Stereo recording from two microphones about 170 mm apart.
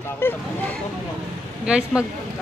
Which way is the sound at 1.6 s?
5° right (ahead or behind).